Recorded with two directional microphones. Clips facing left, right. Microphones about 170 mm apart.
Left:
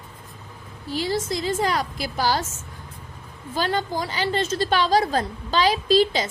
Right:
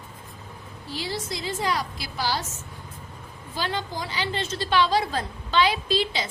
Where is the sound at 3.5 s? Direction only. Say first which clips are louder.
Left 5 dB; 50° left (ahead or behind).